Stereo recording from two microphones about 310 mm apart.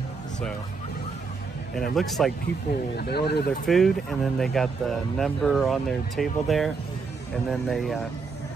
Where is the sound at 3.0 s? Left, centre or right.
Left.